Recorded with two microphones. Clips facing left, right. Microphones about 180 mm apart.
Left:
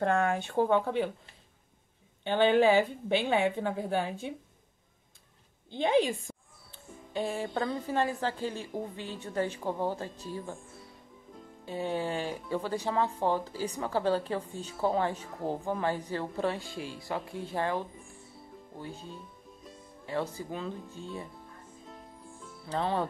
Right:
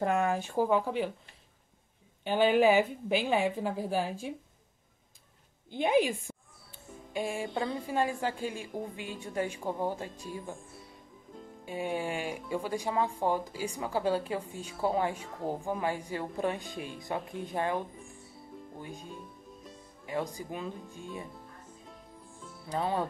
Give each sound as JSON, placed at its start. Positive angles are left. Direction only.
{"t": 0.7, "sound": "a woman's voice", "side_deg": -5}
{"t": 2.2, "sound": "a woman's voice", "side_deg": -10}
{"t": 5.7, "sound": "speech", "side_deg": -10}
{"t": 11.6, "sound": "speech", "side_deg": -15}
{"t": 22.7, "sound": "speech", "side_deg": -10}